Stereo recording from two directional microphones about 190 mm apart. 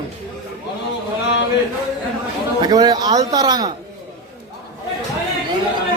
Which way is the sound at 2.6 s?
20° right (ahead or behind).